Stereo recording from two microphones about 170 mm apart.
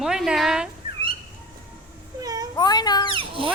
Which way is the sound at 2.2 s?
20° right (ahead or behind).